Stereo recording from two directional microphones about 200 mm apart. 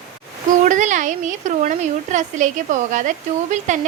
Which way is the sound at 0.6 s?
40° right (ahead or behind).